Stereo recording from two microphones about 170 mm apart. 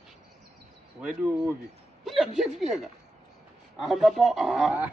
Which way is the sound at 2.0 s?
Centre (ahead or behind).